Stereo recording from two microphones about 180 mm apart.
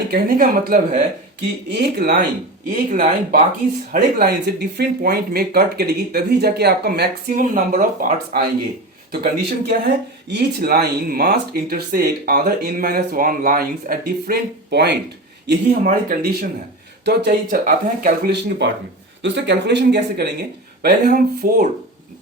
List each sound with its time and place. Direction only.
0.1 s speech: 50° right (ahead or behind)
3.9 s speech: 60° right (ahead or behind)
7.3 s speech: 45° right (ahead or behind)
9.1 s speech: 60° right (ahead or behind)
15.4 s speech: 50° right (ahead or behind)
18.3 s speech: 70° right (ahead or behind)
19.2 s speech: 80° right
20.8 s speech: 55° right (ahead or behind)